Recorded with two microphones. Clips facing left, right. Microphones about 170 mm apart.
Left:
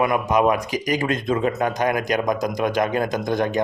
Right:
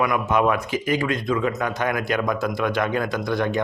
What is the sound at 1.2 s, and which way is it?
Speech, 30° left (ahead or behind).